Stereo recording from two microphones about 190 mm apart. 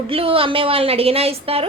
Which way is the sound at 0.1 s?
30° right (ahead or behind).